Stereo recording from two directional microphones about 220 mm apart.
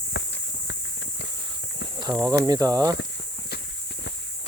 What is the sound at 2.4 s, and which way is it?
Speech, 15° right (ahead or behind).